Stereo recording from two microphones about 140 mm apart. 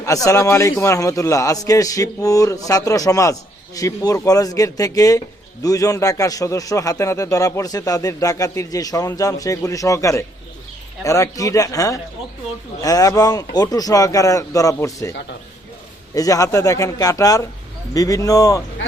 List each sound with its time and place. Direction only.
0.0 s a man's voice: 25° left (ahead or behind)
16.1 s a man's voice: 25° left (ahead or behind)